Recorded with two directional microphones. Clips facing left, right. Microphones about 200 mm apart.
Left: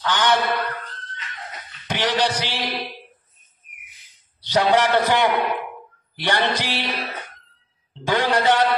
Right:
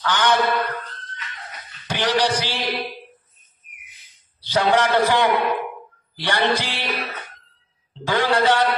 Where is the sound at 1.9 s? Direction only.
20° left (ahead or behind).